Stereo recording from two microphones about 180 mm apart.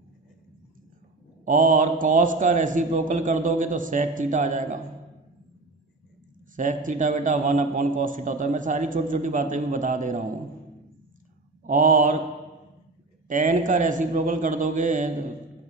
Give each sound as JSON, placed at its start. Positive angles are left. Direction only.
{"t": 1.4, "sound": "a man's voice", "side_deg": -45}
{"t": 6.5, "sound": "a man's voice", "side_deg": -45}
{"t": 11.6, "sound": "a man's voice", "side_deg": -50}
{"t": 13.3, "sound": "a man's voice", "side_deg": -45}